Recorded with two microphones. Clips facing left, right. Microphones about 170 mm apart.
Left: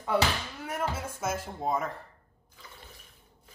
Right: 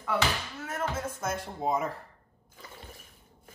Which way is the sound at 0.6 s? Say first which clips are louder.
Even; 15° left (ahead or behind).